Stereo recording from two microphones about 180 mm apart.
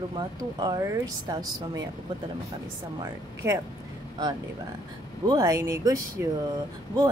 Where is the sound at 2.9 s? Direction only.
20° right (ahead or behind).